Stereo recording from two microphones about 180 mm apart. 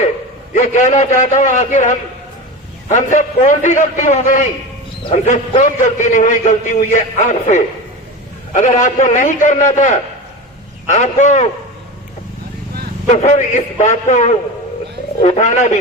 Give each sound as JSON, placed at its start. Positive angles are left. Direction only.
{"t": 0.5, "sound": "a man's voice", "side_deg": 40}
{"t": 2.9, "sound": "a man's voice", "side_deg": 45}
{"t": 13.1, "sound": "a man's voice", "side_deg": 40}